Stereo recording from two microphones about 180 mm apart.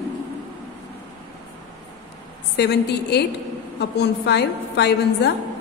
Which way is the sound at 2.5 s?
70° left (ahead or behind).